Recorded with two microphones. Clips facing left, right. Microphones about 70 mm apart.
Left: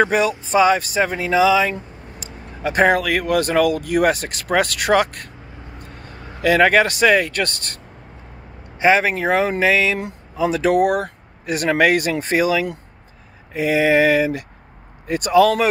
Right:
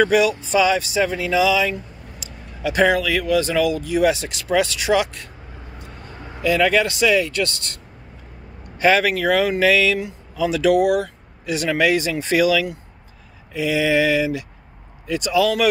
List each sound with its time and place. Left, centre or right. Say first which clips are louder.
0.0 s speech: right 1 dB; left
8.7 s speech: left 1 dB; left
9.9 s speech: even; left